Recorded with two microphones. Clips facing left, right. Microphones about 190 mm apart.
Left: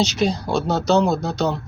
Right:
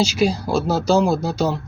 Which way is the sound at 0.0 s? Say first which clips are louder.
Right 1 dB; 10° right (ahead or behind).